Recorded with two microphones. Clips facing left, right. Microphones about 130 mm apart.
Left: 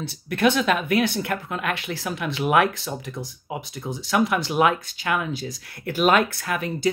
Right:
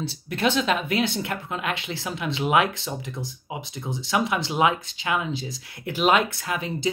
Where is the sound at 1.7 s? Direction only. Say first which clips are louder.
Left 3 dB; 55° left (ahead or behind).